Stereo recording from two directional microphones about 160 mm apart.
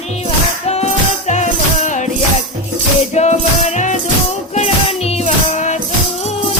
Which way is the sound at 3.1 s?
45° left (ahead or behind).